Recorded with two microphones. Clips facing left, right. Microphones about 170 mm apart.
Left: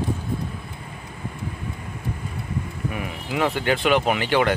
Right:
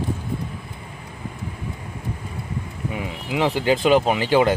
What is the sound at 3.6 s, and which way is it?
Speech, 30° right (ahead or behind).